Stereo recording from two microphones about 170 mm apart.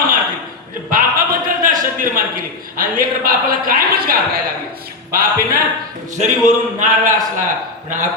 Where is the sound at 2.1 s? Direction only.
55° right (ahead or behind).